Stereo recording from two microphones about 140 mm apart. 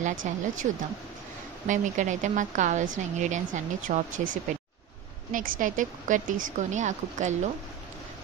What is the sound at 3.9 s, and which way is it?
A woman's voice, 70° right (ahead or behind).